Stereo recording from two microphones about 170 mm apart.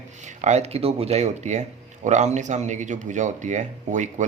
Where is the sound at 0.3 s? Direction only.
40° right (ahead or behind).